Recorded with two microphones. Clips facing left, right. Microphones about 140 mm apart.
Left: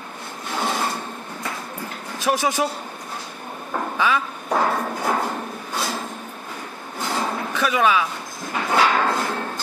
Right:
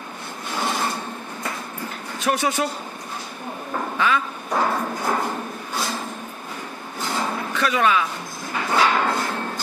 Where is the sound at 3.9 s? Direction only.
15° left (ahead or behind).